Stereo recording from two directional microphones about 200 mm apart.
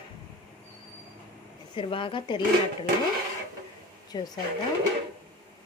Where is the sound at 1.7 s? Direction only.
25° left (ahead or behind).